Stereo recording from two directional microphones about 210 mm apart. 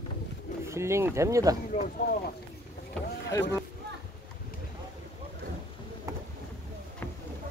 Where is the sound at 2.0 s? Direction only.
50° left (ahead or behind).